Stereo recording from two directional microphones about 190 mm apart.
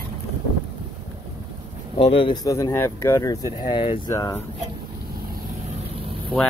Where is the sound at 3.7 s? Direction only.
30° left (ahead or behind).